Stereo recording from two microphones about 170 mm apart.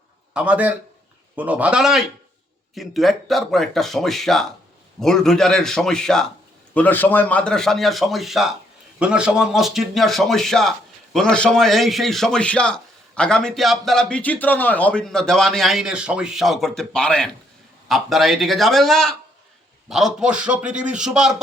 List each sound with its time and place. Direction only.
0.3 s a man's voice: 10° right (ahead or behind)